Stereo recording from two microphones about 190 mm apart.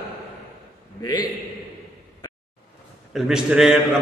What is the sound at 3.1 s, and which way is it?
Speech, centre (ahead or behind).